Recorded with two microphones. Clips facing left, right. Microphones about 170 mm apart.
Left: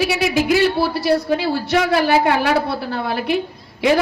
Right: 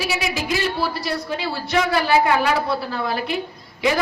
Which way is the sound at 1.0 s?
55° left (ahead or behind).